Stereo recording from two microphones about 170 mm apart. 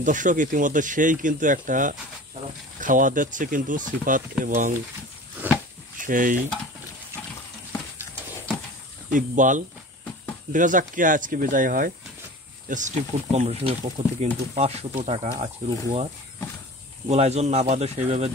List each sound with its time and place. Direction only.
0.0 s speech: 50° right (ahead or behind)
5.4 s a sound: 10° right (ahead or behind)
5.9 s speech: 50° right (ahead or behind)
9.1 s speech: 50° right (ahead or behind)
17.1 s speech: 40° right (ahead or behind)